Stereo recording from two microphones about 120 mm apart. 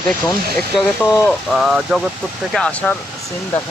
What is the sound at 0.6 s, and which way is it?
Speech, 10° left (ahead or behind).